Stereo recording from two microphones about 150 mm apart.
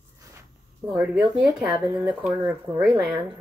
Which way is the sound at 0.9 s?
10° right (ahead or behind).